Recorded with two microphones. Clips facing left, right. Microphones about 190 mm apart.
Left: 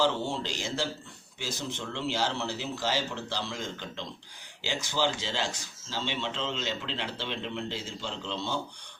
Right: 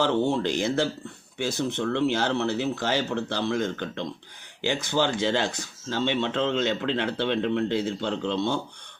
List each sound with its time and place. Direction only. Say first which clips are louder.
0.0 s speech: right 5 dB; 55° right (ahead or behind)